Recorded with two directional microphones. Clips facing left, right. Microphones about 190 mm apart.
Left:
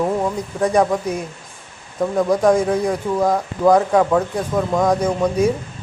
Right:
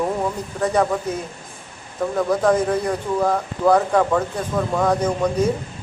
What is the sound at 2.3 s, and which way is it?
Speech, 10° left (ahead or behind).